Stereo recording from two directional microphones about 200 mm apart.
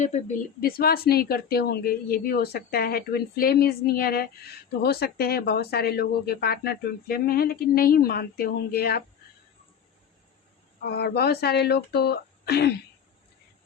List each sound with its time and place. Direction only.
0.0 s speech: 35° left (ahead or behind)
10.8 s speech: 50° left (ahead or behind)